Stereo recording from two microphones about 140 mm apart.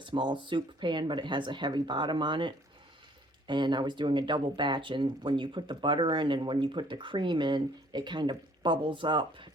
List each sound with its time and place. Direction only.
0.0 s speech: 35° right (ahead or behind)